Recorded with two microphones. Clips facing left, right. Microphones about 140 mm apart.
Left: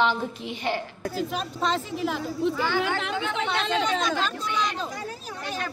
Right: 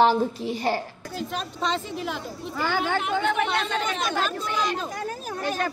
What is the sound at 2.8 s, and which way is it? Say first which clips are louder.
Speech: right 1 dB; 90° left.